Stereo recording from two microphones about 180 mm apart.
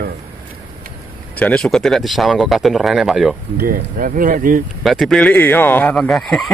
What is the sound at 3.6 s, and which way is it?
Speech, 50° right (ahead or behind).